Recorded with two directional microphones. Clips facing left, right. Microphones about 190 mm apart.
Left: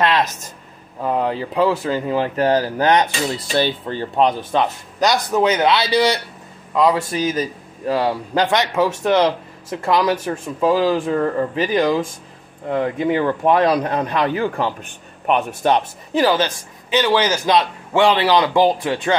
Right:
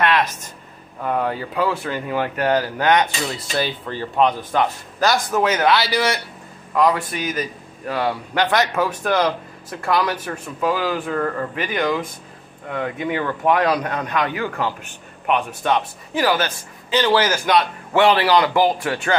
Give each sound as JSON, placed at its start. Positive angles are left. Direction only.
{"t": 1.0, "sound": "a man's voice", "side_deg": 25}
{"t": 16.2, "sound": "a man's voice", "side_deg": 25}